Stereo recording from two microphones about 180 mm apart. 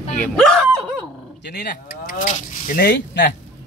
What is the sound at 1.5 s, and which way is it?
Speech, 60° left (ahead or behind).